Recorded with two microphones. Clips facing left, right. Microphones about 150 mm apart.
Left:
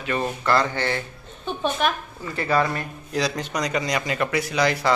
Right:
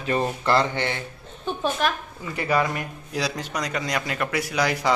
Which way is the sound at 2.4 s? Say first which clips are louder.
Left 1 dB; 15° right (ahead or behind).